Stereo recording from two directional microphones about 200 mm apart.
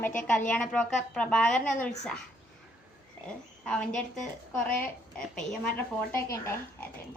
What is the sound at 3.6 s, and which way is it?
A woman's voice, 5° left (ahead or behind).